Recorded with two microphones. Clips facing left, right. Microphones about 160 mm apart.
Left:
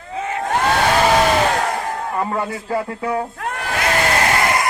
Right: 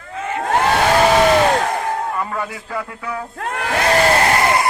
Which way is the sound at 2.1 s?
30° left (ahead or behind).